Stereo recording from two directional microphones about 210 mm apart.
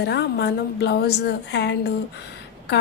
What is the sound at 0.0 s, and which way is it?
A woman's voice, 50° left (ahead or behind).